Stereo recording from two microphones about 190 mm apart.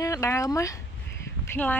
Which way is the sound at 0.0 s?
15° left (ahead or behind).